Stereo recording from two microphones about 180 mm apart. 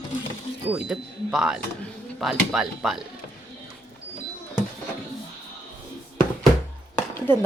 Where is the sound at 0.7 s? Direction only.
5° right (ahead or behind).